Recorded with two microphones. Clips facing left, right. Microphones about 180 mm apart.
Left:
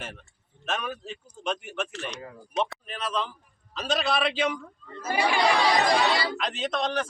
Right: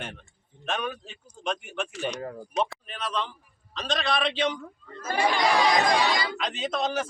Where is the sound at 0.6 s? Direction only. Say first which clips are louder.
Right 1 dB; centre (ahead or behind).